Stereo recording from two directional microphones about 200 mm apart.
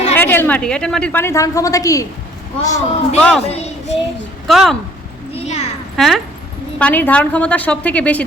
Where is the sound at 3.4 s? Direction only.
30° left (ahead or behind).